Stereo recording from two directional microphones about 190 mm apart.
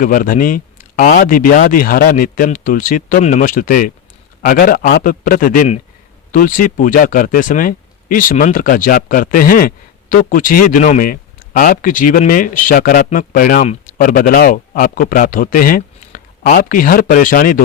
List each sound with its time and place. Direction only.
0.0 s speech: 45° left (ahead or behind)